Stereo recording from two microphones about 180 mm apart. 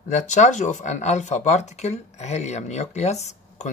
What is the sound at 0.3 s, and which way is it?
Speech, 40° left (ahead or behind).